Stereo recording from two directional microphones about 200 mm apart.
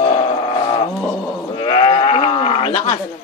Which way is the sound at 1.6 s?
25° left (ahead or behind).